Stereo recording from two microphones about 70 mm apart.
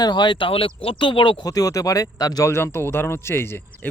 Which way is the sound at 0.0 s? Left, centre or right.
Left.